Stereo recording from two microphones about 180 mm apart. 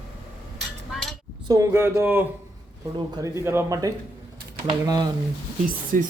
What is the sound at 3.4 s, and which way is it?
Speech, 15° right (ahead or behind).